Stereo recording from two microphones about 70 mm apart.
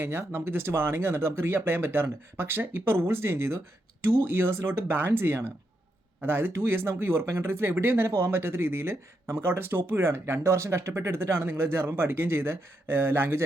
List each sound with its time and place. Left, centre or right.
0.0 s speech: right
4.9 s speech: right